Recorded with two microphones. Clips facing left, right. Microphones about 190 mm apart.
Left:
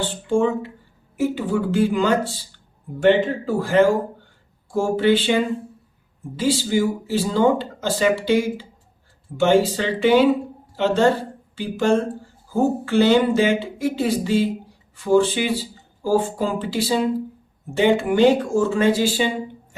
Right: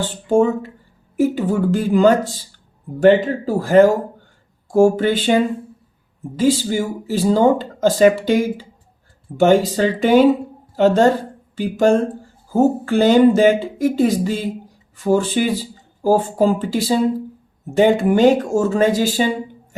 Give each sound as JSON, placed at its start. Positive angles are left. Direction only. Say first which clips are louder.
{"t": 0.0, "sound": "a woman's voice", "louder": "right 4 dB", "side_deg": -40}